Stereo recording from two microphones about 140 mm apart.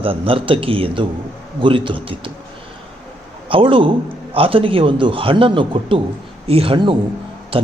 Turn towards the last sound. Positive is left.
turn(degrees=-40)  # may be behind; listen again after turning